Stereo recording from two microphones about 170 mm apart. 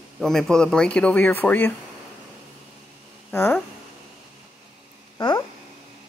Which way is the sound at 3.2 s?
10° left (ahead or behind).